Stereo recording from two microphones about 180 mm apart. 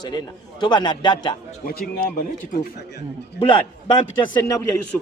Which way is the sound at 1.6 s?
55° left (ahead or behind).